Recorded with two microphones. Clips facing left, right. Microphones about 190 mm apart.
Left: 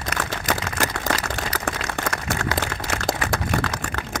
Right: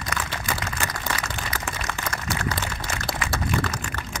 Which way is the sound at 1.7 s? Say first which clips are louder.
Left 5 dB; 50° left (ahead or behind).